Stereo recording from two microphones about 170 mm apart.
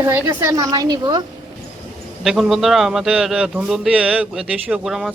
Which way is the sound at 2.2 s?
Centre (ahead or behind).